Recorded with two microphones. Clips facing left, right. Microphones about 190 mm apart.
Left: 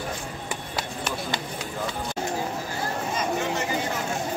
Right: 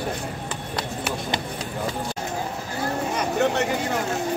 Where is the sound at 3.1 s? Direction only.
65° right (ahead or behind).